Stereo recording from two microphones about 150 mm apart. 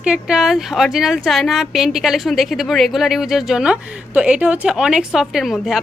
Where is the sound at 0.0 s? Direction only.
5° right (ahead or behind).